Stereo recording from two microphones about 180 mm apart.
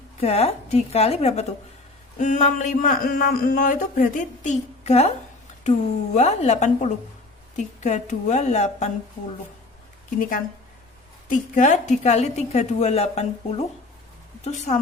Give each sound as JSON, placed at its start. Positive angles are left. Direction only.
{"t": 0.2, "sound": "a woman's voice", "side_deg": 35}
{"t": 10.2, "sound": "a woman's voice", "side_deg": 50}